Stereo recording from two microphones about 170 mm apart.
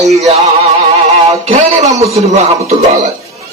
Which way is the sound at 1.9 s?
40° right (ahead or behind).